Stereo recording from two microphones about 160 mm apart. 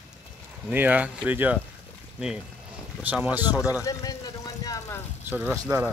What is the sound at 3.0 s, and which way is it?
Speech, 10° right (ahead or behind).